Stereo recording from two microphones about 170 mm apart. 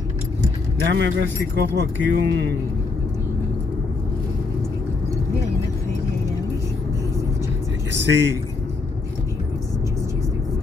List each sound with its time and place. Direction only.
0.8 s speech: 90° right
7.9 s speech: 90° right